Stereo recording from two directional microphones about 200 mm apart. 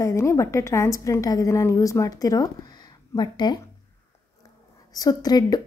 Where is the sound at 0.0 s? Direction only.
15° left (ahead or behind).